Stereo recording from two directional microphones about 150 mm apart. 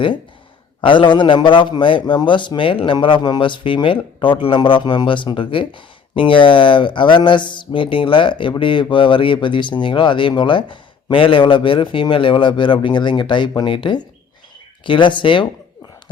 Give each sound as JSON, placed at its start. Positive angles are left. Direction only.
{"t": 0.8, "sound": "speech", "side_deg": 35}